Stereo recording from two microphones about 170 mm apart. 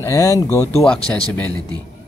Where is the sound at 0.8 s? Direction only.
5° left (ahead or behind).